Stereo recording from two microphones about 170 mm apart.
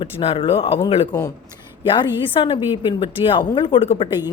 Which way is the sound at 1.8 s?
30° left (ahead or behind).